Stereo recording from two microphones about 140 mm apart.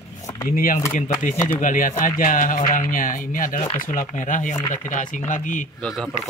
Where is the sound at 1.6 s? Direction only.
75° left (ahead or behind).